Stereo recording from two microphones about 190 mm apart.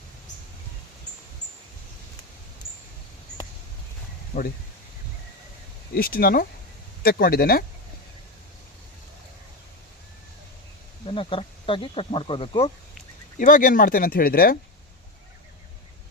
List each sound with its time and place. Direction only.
4.3 s speech: 50° left (ahead or behind)
5.9 s speech: 50° left (ahead or behind)
11.0 s speech: 25° left (ahead or behind)
13.4 s speech: 45° left (ahead or behind)